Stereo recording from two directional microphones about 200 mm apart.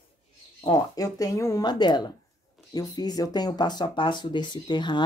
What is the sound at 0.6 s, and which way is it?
Speech, 20° left (ahead or behind).